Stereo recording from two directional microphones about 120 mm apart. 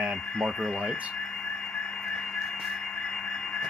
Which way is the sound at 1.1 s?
5° left (ahead or behind).